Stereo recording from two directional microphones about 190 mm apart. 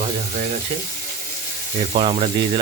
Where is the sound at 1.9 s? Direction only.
35° right (ahead or behind).